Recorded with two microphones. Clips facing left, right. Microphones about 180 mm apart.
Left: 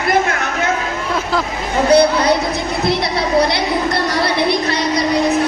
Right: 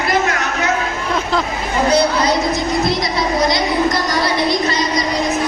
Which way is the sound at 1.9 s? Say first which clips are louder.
Left 5 dB; 60° left (ahead or behind).